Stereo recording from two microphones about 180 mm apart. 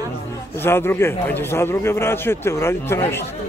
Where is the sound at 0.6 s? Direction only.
15° left (ahead or behind).